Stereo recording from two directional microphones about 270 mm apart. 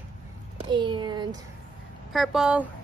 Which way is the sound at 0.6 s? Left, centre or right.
Centre.